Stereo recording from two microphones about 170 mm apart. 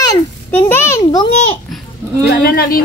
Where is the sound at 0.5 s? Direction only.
10° left (ahead or behind).